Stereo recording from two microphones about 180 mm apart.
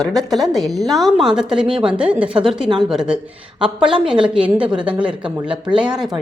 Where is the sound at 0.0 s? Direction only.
Centre (ahead or behind).